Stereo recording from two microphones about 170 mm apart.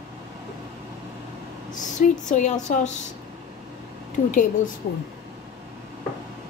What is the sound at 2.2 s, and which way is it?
Speech, 45° left (ahead or behind).